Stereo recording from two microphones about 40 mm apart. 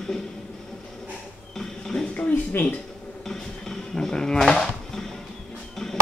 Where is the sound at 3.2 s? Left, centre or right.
Centre.